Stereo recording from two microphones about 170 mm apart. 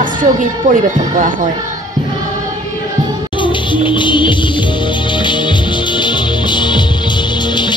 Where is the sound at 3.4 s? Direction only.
30° left (ahead or behind).